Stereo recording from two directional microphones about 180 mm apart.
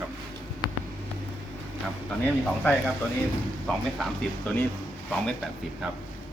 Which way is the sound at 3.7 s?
Centre (ahead or behind).